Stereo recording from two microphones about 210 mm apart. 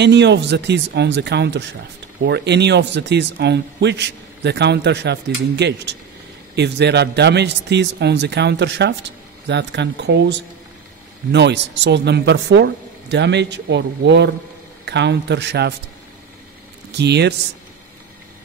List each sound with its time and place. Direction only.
0.0 s a man's voice: 55° right (ahead or behind)
11.3 s speech: 55° right (ahead or behind)
16.9 s a man's voice: 55° right (ahead or behind)